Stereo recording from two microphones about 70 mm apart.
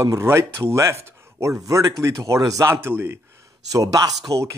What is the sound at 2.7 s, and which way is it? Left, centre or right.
Speech, right.